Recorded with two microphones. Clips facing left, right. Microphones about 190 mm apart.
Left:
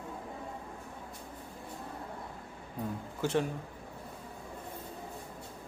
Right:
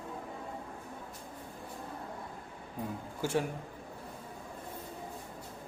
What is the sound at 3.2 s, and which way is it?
Speech, 10° right (ahead or behind).